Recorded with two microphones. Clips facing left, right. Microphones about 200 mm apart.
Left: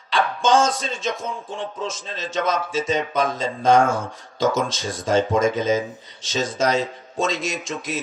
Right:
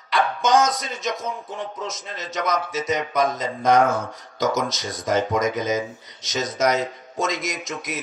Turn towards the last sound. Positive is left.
turn(degrees=30)  # may be behind; listen again after turning